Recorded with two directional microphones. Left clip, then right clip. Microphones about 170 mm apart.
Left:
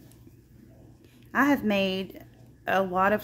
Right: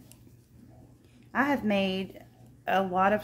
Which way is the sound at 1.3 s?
20° left (ahead or behind).